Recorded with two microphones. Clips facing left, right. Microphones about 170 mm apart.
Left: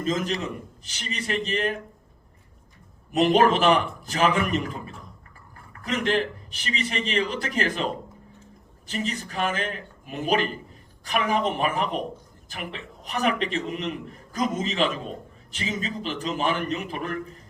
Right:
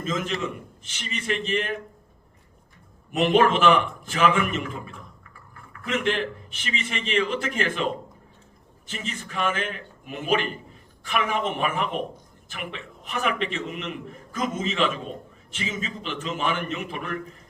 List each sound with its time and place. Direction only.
0.0 s a man's voice: 35° left (ahead or behind)
3.1 s a man's voice: 40° left (ahead or behind)
8.9 s a man's voice: 35° left (ahead or behind)